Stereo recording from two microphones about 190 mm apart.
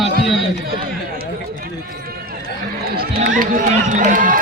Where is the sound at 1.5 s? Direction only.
50° right (ahead or behind).